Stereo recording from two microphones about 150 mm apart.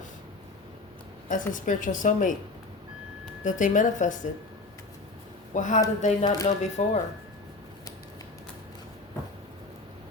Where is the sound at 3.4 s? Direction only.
60° left (ahead or behind).